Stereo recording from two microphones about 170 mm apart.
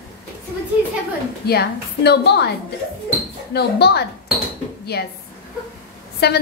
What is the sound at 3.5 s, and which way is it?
A woman's voice, 70° left (ahead or behind).